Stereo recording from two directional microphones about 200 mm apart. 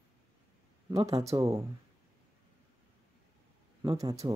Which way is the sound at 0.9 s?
15° right (ahead or behind).